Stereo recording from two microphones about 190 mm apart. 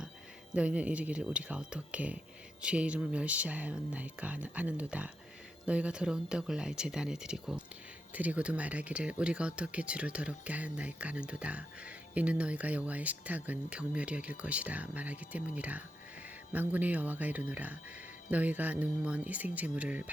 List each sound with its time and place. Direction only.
0.5 s speech: 5° right (ahead or behind)